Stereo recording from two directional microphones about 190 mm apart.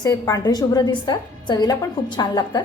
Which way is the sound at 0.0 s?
20° left (ahead or behind).